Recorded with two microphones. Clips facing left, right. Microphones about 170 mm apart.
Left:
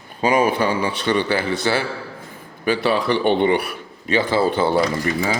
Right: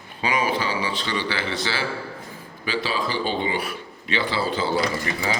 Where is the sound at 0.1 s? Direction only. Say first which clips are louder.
Left 6 dB; 45° left (ahead or behind).